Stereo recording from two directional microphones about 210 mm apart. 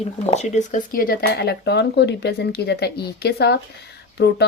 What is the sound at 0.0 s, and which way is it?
Speech, 30° left (ahead or behind).